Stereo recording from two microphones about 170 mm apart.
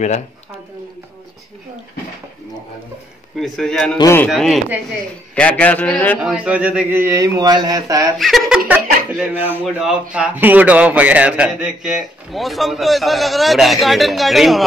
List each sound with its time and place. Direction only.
3.3 s a man's voice: centre (ahead or behind)
4.0 s a man's voice: 15° left (ahead or behind)
4.3 s a man's voice: centre (ahead or behind)
6.3 s speech: 10° right (ahead or behind)
8.2 s a man's voice: centre (ahead or behind)